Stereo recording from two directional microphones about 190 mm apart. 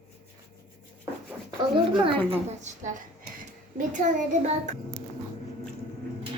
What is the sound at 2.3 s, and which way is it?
A child's voice, 40° right (ahead or behind).